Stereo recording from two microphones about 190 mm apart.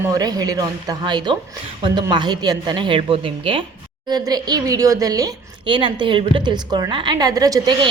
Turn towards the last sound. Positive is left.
turn(degrees=-20)  # may be behind; listen again after turning